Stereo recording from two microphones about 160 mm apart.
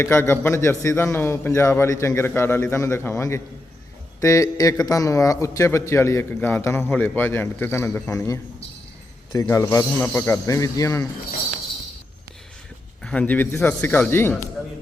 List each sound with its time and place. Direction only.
0.0 s a man's voice: 15° left (ahead or behind)
13.0 s a man's voice: 5° left (ahead or behind)